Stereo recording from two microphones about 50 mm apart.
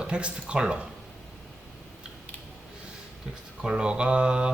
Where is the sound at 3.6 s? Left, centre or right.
Centre.